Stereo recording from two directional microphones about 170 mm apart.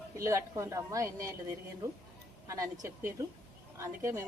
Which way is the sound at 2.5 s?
15° right (ahead or behind).